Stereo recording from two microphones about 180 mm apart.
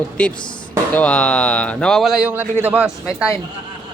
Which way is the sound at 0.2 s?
5° left (ahead or behind).